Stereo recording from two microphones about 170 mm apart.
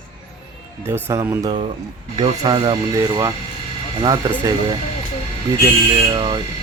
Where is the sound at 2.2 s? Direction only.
25° right (ahead or behind).